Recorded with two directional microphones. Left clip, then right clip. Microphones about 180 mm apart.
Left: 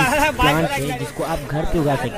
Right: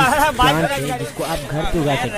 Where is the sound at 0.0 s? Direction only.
35° right (ahead or behind).